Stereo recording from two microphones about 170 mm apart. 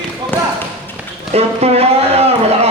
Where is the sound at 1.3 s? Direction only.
35° right (ahead or behind).